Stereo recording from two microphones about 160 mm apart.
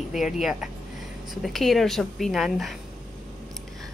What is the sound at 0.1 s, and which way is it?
Speech, centre (ahead or behind).